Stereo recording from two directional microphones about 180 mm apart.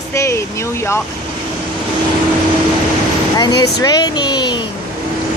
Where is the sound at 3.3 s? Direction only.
20° left (ahead or behind).